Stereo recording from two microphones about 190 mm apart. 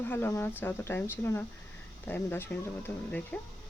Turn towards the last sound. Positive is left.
turn(degrees=10)  # may be behind; listen again after turning